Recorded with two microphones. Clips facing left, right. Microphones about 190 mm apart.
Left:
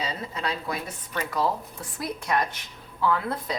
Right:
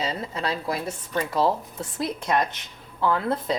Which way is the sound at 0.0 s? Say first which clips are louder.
Right 3 dB; 30° right (ahead or behind).